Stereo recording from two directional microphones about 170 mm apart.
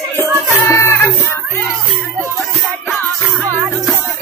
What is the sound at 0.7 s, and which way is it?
Music, 15° left (ahead or behind).